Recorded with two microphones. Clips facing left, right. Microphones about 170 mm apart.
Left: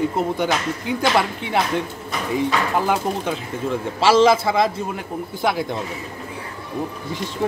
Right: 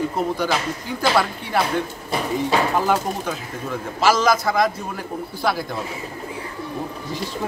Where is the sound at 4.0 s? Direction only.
30° left (ahead or behind).